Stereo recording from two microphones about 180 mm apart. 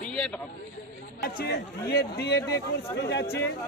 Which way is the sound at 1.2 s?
55° left (ahead or behind).